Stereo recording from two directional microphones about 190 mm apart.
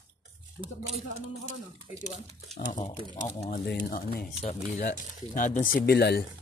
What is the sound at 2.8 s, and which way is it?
Speech, 25° left (ahead or behind).